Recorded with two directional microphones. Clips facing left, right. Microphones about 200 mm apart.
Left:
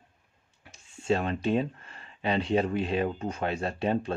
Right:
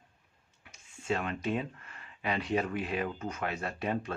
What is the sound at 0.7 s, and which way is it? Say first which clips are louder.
Speech: left 6 dB; 30° left (ahead or behind).